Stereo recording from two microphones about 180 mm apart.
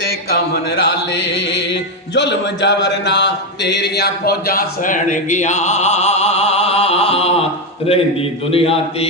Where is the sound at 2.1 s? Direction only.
75° left (ahead or behind); by 7.3 s 35° left (ahead or behind).